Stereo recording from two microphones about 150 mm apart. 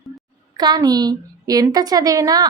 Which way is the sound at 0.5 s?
25° right (ahead or behind).